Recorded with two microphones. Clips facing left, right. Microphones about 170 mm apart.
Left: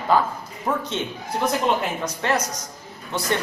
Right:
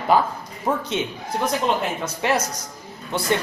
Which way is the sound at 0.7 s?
15° right (ahead or behind).